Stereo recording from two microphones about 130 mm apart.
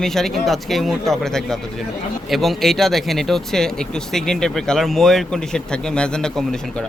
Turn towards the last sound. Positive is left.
turn(degrees=5)  # may be behind; listen again after turning